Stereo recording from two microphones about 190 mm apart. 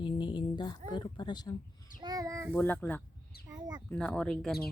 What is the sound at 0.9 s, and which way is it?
Speech, 25° left (ahead or behind).